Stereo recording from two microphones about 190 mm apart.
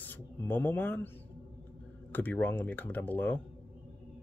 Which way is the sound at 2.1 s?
10° left (ahead or behind).